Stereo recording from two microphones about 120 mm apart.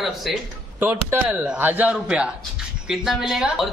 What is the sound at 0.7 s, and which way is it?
A man's voice, 15° right (ahead or behind).